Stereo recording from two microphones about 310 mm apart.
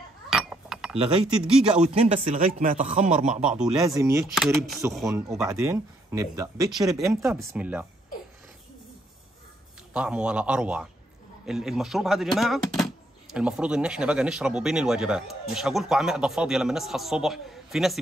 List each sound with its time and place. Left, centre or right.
0.3 s chink: centre
1.8 s speech: centre
3.4 s speech: centre
9.9 s speech: centre